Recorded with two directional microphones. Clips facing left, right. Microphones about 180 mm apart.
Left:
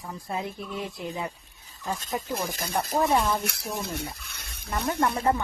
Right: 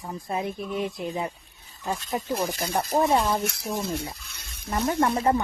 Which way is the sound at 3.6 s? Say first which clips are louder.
Right 4 dB; 60° right (ahead or behind).